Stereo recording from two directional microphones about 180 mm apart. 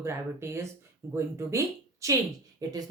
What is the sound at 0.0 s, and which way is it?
Speech, 15° right (ahead or behind).